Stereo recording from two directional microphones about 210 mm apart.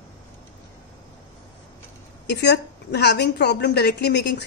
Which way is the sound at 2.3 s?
55° left (ahead or behind).